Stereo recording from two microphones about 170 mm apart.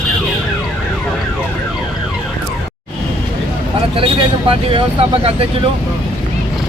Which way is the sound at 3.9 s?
30° right (ahead or behind).